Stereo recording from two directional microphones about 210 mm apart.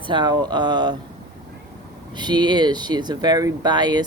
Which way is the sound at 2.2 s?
20° right (ahead or behind).